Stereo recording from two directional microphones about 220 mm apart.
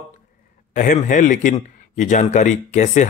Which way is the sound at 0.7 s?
35° left (ahead or behind).